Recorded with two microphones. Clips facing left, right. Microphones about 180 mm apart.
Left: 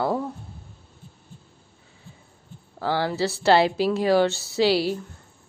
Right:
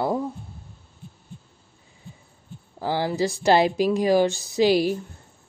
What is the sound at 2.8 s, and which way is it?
A woman's voice, 15° right (ahead or behind).